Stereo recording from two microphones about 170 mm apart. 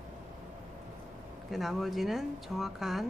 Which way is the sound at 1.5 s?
Centre (ahead or behind).